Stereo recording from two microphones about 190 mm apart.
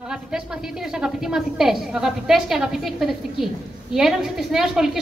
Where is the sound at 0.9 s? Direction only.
5° right (ahead or behind).